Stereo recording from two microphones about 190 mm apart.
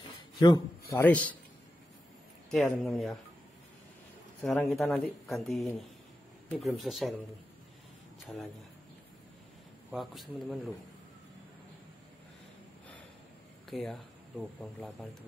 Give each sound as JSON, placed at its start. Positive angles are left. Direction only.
{"t": 0.4, "sound": "a man's voice", "side_deg": 20}
{"t": 2.5, "sound": "speech", "side_deg": 0}
{"t": 4.4, "sound": "speech", "side_deg": 0}
{"t": 9.8, "sound": "speech", "side_deg": 0}
{"t": 13.7, "sound": "speech", "side_deg": 0}